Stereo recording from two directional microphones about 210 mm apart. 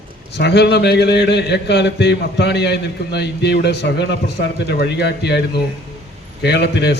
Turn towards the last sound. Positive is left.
turn(degrees=55)  # may be behind; listen again after turning